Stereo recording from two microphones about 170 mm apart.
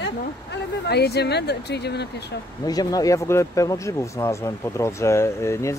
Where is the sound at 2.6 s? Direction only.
20° left (ahead or behind).